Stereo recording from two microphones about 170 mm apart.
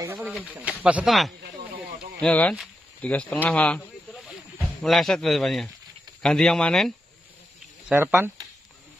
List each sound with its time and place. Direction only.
0.0 s pigeon: 15° right (ahead or behind)
0.8 s speech: 5° right (ahead or behind)
3.4 s a sound: 5° left (ahead or behind)
6.2 s speech: 5° left (ahead or behind)
7.9 s speech: 10° right (ahead or behind)